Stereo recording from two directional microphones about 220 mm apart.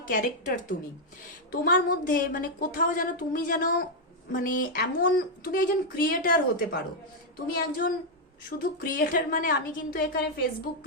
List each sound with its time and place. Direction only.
0.1 s a woman's voice: 35° left (ahead or behind)